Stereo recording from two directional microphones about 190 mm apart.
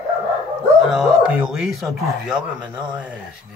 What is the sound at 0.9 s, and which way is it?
Speech, centre (ahead or behind).